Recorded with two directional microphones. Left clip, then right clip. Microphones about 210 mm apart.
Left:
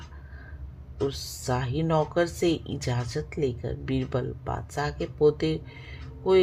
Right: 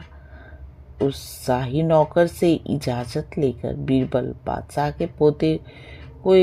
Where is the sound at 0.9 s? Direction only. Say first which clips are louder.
Right 6 dB; 35° right (ahead or behind).